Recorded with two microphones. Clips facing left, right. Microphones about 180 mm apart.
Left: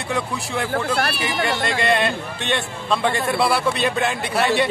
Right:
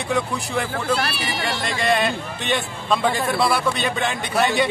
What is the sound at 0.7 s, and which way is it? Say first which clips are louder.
Speech: left 1 dB; 55° left (ahead or behind).